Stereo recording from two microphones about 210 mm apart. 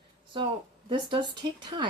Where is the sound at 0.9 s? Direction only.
25° right (ahead or behind).